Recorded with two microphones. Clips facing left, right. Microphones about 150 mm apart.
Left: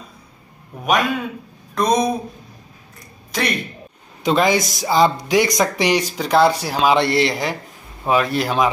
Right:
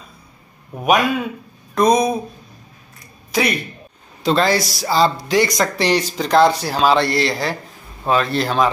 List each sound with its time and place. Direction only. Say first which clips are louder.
1.8 s speech: right 3 dB; centre (ahead or behind)
3.0 s a sound: right 4 dB; 5° right (ahead or behind)
4.2 s speech: even; 15° left (ahead or behind)
7.0 s speech: left 1 dB; 20° left (ahead or behind)